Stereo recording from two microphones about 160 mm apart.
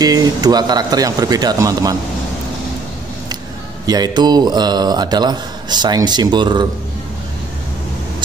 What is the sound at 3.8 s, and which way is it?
Speech, 25° right (ahead or behind).